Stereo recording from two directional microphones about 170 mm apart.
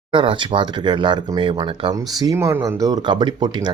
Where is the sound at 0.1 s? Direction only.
30° right (ahead or behind).